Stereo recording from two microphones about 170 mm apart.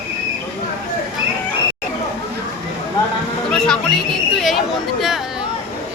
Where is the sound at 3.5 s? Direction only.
5° left (ahead or behind).